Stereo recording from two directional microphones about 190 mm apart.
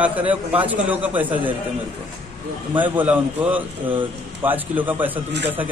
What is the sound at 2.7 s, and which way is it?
Speech, 10° right (ahead or behind).